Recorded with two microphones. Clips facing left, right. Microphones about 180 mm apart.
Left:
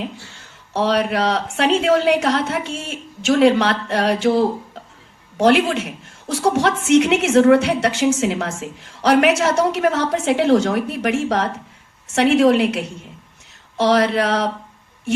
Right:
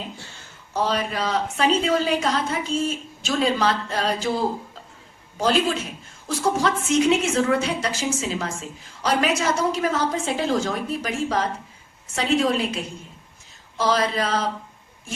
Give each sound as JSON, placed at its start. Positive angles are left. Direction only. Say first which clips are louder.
{"t": 0.7, "sound": "a woman's voice", "louder": "left 6 dB", "side_deg": 70}